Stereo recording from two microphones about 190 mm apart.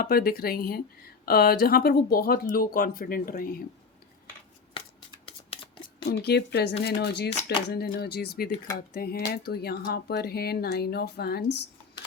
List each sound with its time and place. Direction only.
0.0 s speech: 50° left (ahead or behind)
6.1 s speech: 60° left (ahead or behind)